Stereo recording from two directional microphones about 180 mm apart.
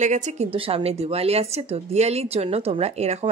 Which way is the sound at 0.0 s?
40° right (ahead or behind).